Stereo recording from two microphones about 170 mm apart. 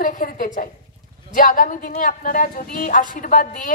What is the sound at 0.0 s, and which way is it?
A woman's voice, 50° left (ahead or behind).